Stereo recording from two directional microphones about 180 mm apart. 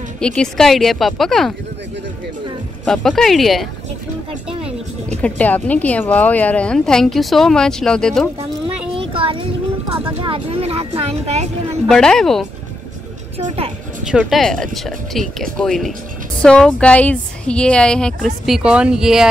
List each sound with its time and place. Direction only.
0.2 s a woman's voice: 5° left (ahead or behind)
2.8 s a woman's voice: 5° left (ahead or behind)
5.2 s a woman's voice: 10° left (ahead or behind)
8.9 s a sound: 30° right (ahead or behind)
10.2 s speech: 30° right (ahead or behind)
11.9 s a woman's voice: 5° left (ahead or behind)
14.0 s a woman's voice: centre (ahead or behind)